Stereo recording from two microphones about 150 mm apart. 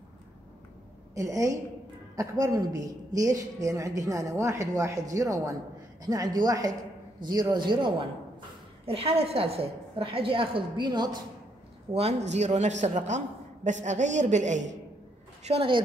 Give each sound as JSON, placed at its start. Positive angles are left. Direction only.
{"t": 1.1, "sound": "a woman's voice", "side_deg": -20}
{"t": 11.9, "sound": "speech", "side_deg": -45}
{"t": 15.4, "sound": "a woman's voice", "side_deg": -40}